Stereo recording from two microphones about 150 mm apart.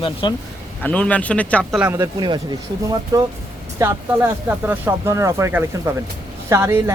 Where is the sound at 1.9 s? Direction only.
25° right (ahead or behind).